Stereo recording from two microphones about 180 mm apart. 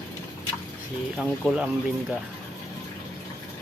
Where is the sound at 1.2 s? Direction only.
Centre (ahead or behind).